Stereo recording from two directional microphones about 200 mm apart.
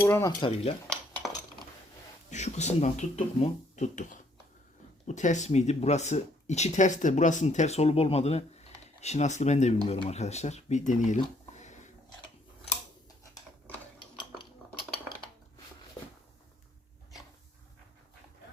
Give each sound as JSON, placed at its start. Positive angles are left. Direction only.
{"t": 0.0, "sound": "stir", "side_deg": 15}
{"t": 0.9, "sound": "dishes", "side_deg": 5}
{"t": 2.3, "sound": "speech", "side_deg": 35}
{"t": 11.5, "sound": "a sound", "side_deg": 35}
{"t": 14.2, "sound": "dishes", "side_deg": 25}